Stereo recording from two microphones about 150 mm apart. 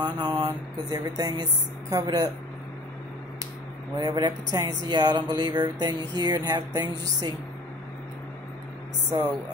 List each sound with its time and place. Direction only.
0.0 s speech: 30° right (ahead or behind)
4.0 s speech: 25° right (ahead or behind)